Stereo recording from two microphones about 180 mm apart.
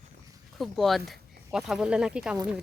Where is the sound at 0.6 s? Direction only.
Centre (ahead or behind).